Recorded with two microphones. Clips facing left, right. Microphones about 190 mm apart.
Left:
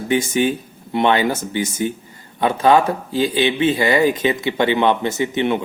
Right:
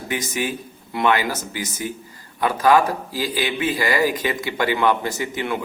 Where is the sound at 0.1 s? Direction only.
25° left (ahead or behind).